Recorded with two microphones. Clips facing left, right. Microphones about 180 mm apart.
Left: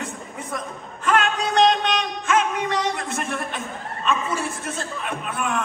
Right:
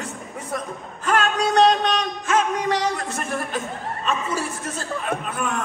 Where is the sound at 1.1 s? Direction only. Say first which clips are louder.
Right 1 dB; 35° right (ahead or behind).